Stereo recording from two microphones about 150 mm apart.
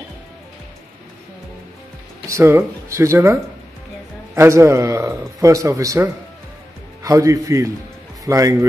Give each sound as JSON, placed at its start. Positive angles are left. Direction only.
{"t": 2.2, "sound": "speech", "side_deg": -20}
{"t": 4.4, "sound": "speech", "side_deg": -20}